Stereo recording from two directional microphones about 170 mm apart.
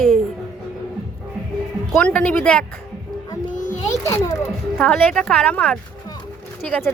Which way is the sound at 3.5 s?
50° left (ahead or behind).